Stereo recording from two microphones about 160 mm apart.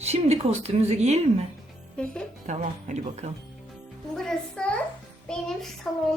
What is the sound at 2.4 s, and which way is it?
Speech, 45° right (ahead or behind).